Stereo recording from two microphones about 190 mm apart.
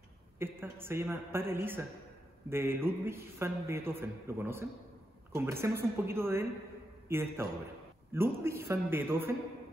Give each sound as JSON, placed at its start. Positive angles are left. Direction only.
{"t": 0.4, "sound": "a man's voice", "side_deg": -10}